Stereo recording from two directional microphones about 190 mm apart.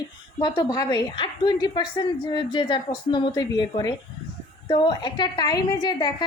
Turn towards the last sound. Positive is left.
turn(degrees=25)  # may be behind; listen again after turning